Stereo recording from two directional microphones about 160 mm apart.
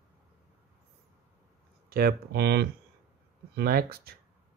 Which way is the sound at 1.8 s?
70° right (ahead or behind).